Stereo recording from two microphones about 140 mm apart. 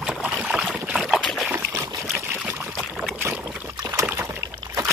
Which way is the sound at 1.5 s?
15° right (ahead or behind).